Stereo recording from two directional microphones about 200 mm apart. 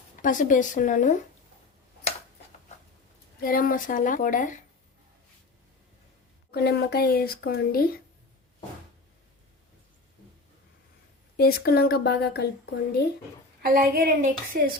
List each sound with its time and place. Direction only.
0.2 s a woman's voice: 40° left (ahead or behind)
3.4 s a woman's voice: 45° left (ahead or behind)
6.5 s speech: 55° left (ahead or behind)
11.3 s speech: 50° left (ahead or behind)
13.6 s a woman's voice: 45° right (ahead or behind)